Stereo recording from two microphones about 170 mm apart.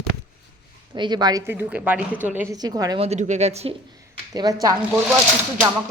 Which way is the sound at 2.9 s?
40° right (ahead or behind).